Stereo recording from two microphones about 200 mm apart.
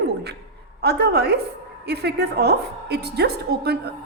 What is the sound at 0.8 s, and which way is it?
A woman's voice, 55° right (ahead or behind).